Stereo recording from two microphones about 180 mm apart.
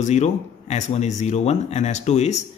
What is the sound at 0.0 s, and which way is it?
A man's voice, 40° left (ahead or behind).